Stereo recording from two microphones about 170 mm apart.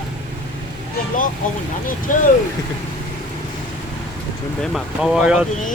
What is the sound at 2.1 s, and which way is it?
Speech, 50° left (ahead or behind).